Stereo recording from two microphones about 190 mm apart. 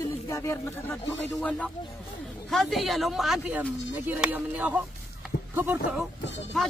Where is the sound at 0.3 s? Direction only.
15° left (ahead or behind); by 6.0 s 10° right (ahead or behind).